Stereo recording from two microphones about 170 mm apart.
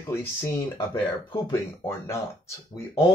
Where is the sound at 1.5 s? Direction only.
15° left (ahead or behind).